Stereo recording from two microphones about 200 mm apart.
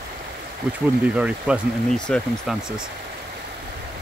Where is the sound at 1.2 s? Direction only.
5° right (ahead or behind).